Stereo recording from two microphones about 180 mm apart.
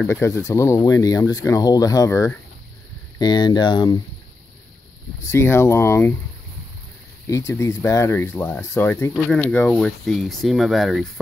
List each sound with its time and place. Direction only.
0.0 s speech: 15° left (ahead or behind)
5.2 s speech: 15° left (ahead or behind)
7.2 s speech: 15° left (ahead or behind); by 11.1 s centre (ahead or behind)